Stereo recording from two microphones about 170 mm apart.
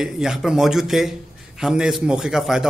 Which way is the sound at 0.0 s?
Centre (ahead or behind).